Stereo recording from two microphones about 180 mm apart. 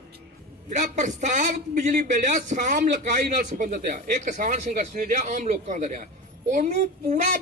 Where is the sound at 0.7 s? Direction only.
40° right (ahead or behind).